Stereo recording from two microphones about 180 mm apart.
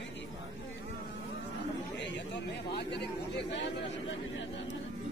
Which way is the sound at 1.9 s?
75° left (ahead or behind).